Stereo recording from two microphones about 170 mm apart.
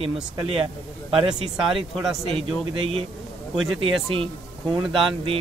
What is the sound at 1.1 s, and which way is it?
Speech, 35° right (ahead or behind).